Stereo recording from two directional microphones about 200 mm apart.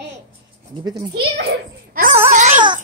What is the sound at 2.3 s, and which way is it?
Dog, 35° right (ahead or behind).